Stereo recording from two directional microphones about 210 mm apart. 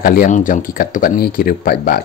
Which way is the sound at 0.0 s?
40° left (ahead or behind).